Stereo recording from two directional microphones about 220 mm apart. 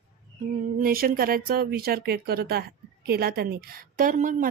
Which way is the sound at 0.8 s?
40° right (ahead or behind).